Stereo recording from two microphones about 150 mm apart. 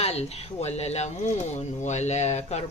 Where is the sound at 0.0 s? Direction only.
45° left (ahead or behind).